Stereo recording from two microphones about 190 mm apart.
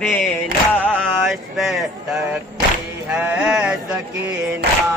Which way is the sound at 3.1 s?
10° right (ahead or behind).